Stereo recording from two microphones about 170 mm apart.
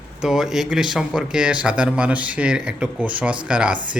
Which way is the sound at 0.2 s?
5° right (ahead or behind).